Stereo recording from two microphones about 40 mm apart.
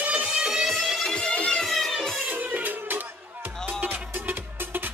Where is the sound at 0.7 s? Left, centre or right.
Centre.